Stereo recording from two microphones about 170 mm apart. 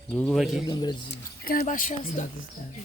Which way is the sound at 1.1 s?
60° left (ahead or behind).